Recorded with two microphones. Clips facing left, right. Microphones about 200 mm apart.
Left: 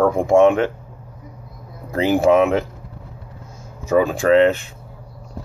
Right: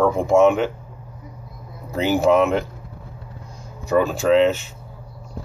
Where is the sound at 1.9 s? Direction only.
Centre (ahead or behind).